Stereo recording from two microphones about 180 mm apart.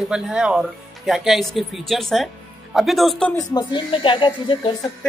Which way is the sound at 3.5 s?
25° left (ahead or behind).